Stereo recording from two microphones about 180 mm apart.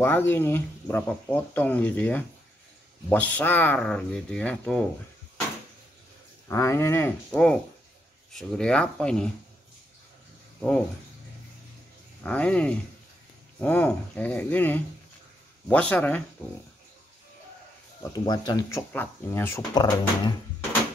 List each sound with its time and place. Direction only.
0.0 s speech: 10° left (ahead or behind)
6.5 s speech: 15° left (ahead or behind)
12.2 s speech: 5° left (ahead or behind)
18.0 s speech: 20° left (ahead or behind)